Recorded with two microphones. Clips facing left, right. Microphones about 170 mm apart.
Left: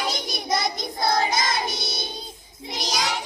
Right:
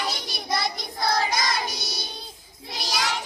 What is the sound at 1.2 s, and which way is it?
Music, 25° left (ahead or behind).